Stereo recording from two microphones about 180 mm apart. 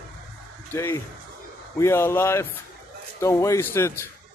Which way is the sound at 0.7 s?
15° left (ahead or behind).